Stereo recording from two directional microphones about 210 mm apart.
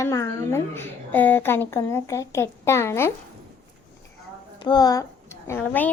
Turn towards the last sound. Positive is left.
turn(degrees=10)  # may be behind; listen again after turning